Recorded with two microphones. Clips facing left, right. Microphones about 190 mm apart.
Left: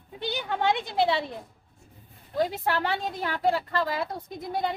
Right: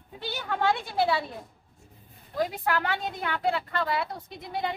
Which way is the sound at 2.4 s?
30° left (ahead or behind).